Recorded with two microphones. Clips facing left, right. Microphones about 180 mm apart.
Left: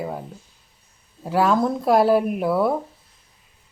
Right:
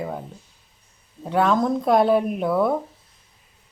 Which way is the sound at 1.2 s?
5° left (ahead or behind).